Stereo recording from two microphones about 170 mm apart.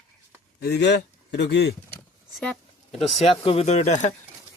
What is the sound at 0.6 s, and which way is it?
Speech, 80° left.